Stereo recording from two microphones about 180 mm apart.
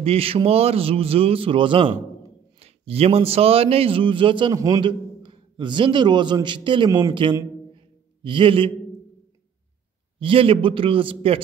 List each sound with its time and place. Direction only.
0.0 s a man's voice: 30° right (ahead or behind)
7.7 s a sound: 30° right (ahead or behind)
10.1 s a man's voice: 30° right (ahead or behind)